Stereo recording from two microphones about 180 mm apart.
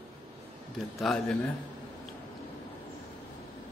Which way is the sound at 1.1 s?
Centre (ahead or behind).